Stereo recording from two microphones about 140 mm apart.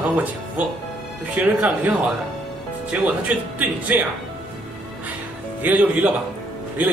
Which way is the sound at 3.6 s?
10° right (ahead or behind).